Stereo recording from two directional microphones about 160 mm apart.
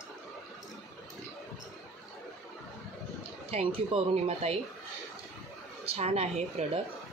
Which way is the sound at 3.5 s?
35° right (ahead or behind).